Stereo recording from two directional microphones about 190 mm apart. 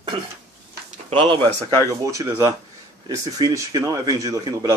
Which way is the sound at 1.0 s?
30° right (ahead or behind).